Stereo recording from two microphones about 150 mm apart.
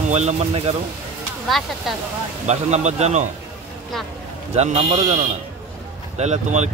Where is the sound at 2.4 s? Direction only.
50° right (ahead or behind).